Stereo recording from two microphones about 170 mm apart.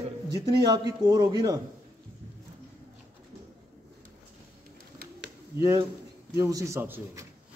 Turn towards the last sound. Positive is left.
turn(degrees=-15)  # may be behind; listen again after turning